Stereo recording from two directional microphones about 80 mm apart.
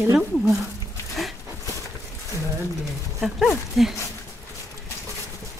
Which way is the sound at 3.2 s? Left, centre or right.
Centre.